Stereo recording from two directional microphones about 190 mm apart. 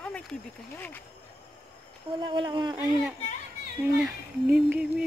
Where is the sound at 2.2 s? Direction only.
25° right (ahead or behind).